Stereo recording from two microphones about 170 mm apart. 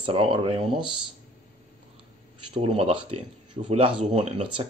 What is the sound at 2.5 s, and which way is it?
Speech, 35° right (ahead or behind).